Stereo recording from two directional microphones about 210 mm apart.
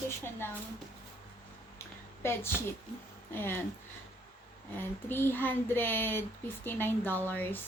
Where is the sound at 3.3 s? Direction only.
10° left (ahead or behind).